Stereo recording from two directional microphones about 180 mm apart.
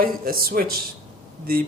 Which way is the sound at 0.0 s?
55° right (ahead or behind).